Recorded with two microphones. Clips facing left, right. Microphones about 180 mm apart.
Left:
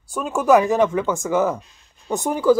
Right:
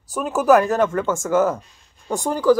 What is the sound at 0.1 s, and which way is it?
Speech, 5° right (ahead or behind).